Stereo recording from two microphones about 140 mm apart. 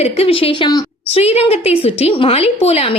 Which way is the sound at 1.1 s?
45° left (ahead or behind).